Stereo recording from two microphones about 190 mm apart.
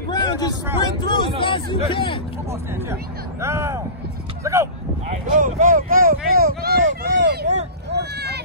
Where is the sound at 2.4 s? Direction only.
15° right (ahead or behind).